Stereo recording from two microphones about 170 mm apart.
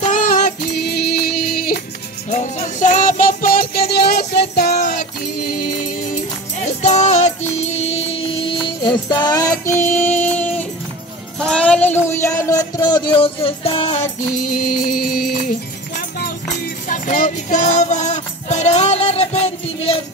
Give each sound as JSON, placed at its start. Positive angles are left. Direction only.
{"t": 0.0, "sound": "music", "side_deg": 50}
{"t": 0.7, "sound": "music", "side_deg": 70}
{"t": 2.2, "sound": "music", "side_deg": 45}
{"t": 6.8, "sound": "music", "side_deg": 45}
{"t": 14.6, "sound": "music", "side_deg": 60}
{"t": 16.8, "sound": "music", "side_deg": 50}